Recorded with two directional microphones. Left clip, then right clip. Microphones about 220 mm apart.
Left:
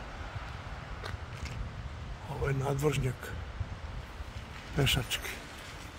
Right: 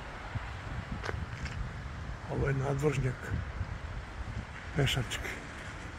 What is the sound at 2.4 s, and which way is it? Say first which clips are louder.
Speech: left 1 dB; 10° left (ahead or behind).